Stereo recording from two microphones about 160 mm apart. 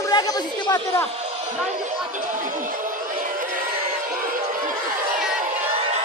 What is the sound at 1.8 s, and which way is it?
Speech, 55° right (ahead or behind).